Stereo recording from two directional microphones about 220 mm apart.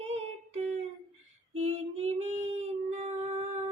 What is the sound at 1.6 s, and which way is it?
Child singing, 30° right (ahead or behind).